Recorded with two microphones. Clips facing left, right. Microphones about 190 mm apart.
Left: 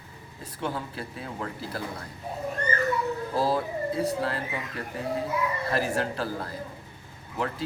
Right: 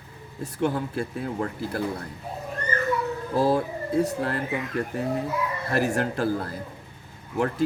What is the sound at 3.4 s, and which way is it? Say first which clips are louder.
Speech: right 4 dB; 50° right (ahead or behind).